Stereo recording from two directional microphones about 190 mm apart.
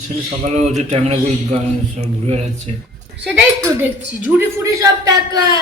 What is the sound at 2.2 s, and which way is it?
Speech, 35° right (ahead or behind).